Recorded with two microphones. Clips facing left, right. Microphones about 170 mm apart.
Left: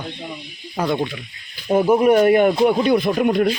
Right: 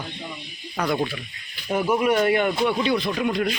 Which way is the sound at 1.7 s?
35° left (ahead or behind).